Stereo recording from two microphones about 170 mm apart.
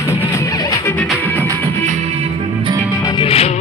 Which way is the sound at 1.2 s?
10° left (ahead or behind).